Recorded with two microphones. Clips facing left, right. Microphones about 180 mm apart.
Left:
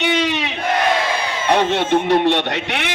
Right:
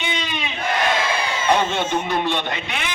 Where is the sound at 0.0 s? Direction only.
80° left.